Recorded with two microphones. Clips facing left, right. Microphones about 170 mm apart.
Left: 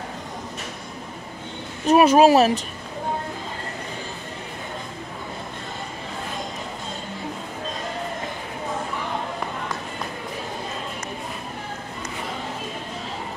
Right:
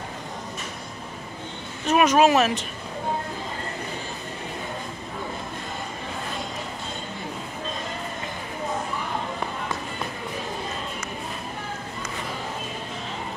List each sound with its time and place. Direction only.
1.9 s speech: 35° left (ahead or behind)